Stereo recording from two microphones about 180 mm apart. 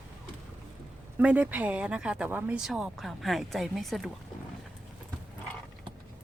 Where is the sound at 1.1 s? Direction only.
10° right (ahead or behind).